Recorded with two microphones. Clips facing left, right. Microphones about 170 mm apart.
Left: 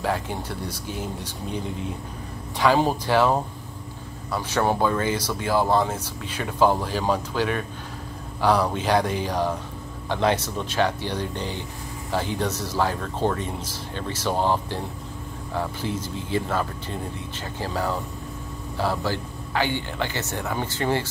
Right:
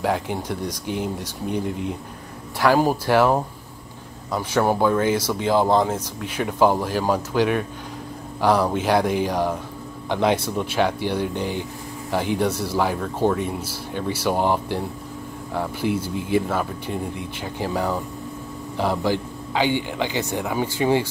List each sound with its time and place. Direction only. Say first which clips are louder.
0.0 s speech: right 3 dB; 15° right (ahead or behind)
2.6 s speech: right 2 dB; 10° right (ahead or behind)